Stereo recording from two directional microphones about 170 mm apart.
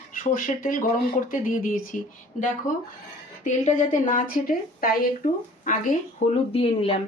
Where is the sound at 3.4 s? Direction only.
45° left (ahead or behind).